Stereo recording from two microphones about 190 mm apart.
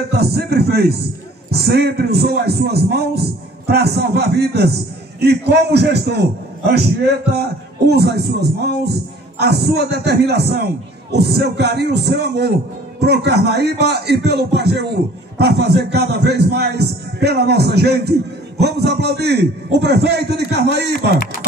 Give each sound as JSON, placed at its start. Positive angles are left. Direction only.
{"t": 0.1, "sound": "a man's voice", "side_deg": -55}
{"t": 21.2, "sound": "speech", "side_deg": 55}